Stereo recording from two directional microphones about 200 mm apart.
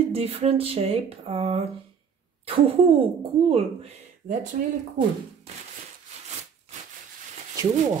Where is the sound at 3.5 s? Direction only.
30° right (ahead or behind).